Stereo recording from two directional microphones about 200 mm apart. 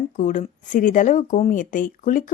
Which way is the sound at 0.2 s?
40° left (ahead or behind).